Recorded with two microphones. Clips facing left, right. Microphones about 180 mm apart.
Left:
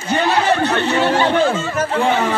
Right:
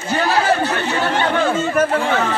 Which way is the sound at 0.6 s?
25° left (ahead or behind).